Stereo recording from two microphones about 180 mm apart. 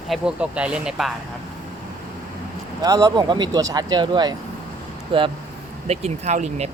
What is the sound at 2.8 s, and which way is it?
Speech, 20° right (ahead or behind).